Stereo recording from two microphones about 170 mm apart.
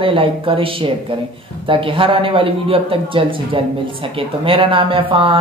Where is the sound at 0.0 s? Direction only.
30° right (ahead or behind).